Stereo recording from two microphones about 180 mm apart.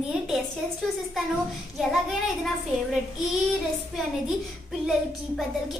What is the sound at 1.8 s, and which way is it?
Child singing, centre (ahead or behind).